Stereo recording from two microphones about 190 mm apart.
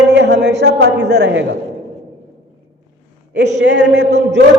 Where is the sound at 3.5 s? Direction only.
65° right (ahead or behind).